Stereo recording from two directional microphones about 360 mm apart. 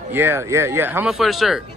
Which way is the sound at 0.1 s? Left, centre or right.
Centre.